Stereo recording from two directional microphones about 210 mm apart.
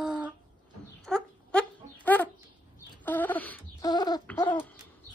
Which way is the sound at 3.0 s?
10° left (ahead or behind).